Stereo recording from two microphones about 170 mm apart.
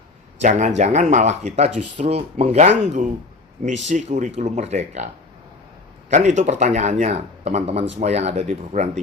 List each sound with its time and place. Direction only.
0.4 s speech: 45° right (ahead or behind)
6.1 s speech: 45° right (ahead or behind)